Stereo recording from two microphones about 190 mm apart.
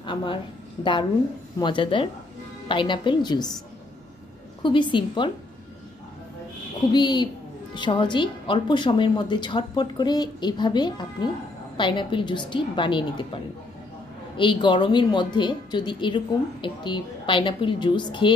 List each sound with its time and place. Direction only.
0.0 s a woman's voice: 25° left (ahead or behind)
1.6 s a woman's voice: 25° left (ahead or behind)
4.6 s a woman's voice: 25° left (ahead or behind)
6.9 s a woman's voice: 20° left (ahead or behind)